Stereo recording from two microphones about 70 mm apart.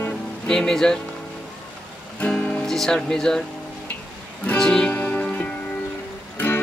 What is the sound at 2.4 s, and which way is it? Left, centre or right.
Music, left.